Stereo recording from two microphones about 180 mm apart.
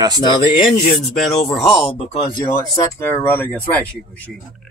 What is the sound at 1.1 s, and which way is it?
Speech, centre (ahead or behind).